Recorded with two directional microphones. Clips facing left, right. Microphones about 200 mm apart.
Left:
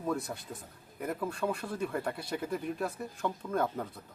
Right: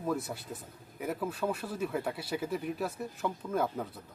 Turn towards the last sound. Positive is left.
turn(degrees=-5)  # may be behind; listen again after turning